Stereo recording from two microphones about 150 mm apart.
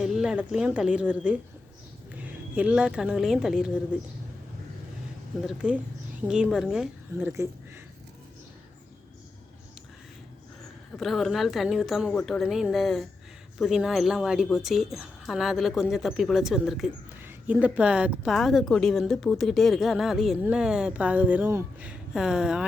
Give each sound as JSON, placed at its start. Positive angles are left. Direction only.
{"t": 0.0, "sound": "speech", "side_deg": -5}
{"t": 5.5, "sound": "speech", "side_deg": -10}
{"t": 7.1, "sound": "speech", "side_deg": -20}
{"t": 10.9, "sound": "speech", "side_deg": 0}